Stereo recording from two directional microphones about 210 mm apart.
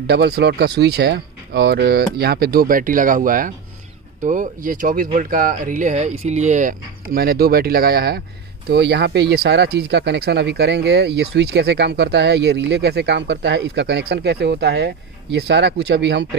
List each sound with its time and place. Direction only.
0.1 s speech: 50° right (ahead or behind)